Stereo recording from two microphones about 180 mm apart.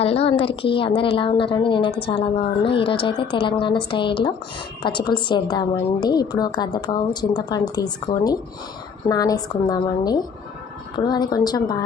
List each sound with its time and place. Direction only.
0.0 s a woman's voice: 35° left (ahead or behind)